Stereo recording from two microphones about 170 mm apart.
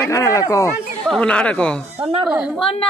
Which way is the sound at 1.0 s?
5° left (ahead or behind).